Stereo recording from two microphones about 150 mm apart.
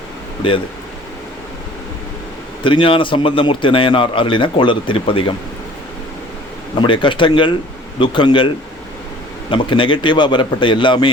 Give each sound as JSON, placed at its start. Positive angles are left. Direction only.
{"t": 0.4, "sound": "a man's voice", "side_deg": 35}
{"t": 2.6, "sound": "a man's voice", "side_deg": 35}
{"t": 6.7, "sound": "a man's voice", "side_deg": 35}
{"t": 9.5, "sound": "a man's voice", "side_deg": 35}